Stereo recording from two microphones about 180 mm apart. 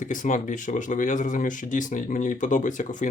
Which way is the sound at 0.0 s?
45° left (ahead or behind).